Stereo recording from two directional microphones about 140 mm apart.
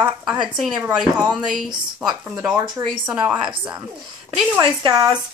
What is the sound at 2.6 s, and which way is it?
Speech, 35° right (ahead or behind).